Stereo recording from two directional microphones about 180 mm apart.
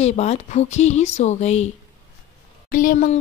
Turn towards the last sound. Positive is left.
turn(degrees=45)  # may be behind; listen again after turning